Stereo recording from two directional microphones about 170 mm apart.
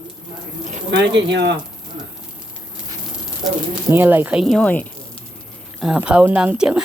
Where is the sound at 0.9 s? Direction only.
85° right.